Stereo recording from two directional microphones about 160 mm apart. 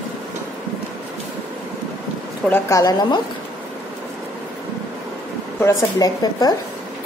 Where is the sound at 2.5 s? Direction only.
20° left (ahead or behind).